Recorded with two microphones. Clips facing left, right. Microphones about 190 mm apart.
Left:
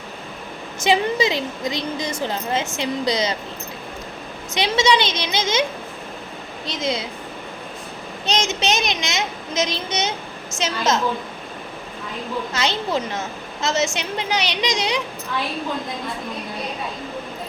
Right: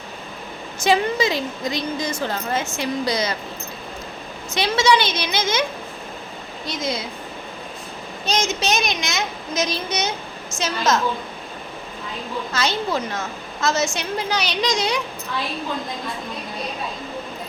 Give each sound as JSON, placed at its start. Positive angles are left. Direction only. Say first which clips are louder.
{"t": 0.9, "sound": "a woman's voice", "louder": "even", "side_deg": 20}
{"t": 4.5, "sound": "a woman's voice", "louder": "even", "side_deg": 20}
{"t": 6.7, "sound": "a woman's voice", "louder": "left 1 dB", "side_deg": 25}
{"t": 8.3, "sound": "a woman's voice", "louder": "even", "side_deg": 25}
{"t": 12.5, "sound": "a woman's voice", "louder": "right 1 dB", "side_deg": 20}